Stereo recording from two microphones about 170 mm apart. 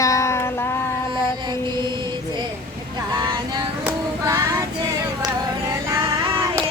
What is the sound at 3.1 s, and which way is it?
Vehicle, 25° right (ahead or behind).